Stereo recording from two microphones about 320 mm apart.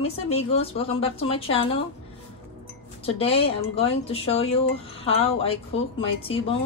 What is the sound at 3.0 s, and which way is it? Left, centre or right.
Speech, centre.